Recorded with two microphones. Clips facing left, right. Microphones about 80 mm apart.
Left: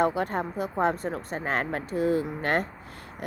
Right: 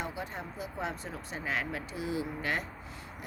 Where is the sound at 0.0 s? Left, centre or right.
Left.